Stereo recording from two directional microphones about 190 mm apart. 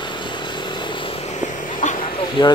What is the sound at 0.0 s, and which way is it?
Vehicle, 25° left (ahead or behind).